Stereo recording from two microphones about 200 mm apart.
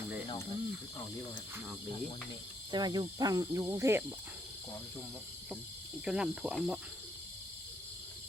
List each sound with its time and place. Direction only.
2.7 s speech: 20° right (ahead or behind)
6.1 s speech: 5° right (ahead or behind)